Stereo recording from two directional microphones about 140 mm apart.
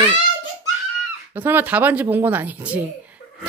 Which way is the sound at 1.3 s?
15° right (ahead or behind).